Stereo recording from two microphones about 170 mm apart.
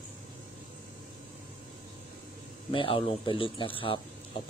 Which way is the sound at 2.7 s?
30° left (ahead or behind).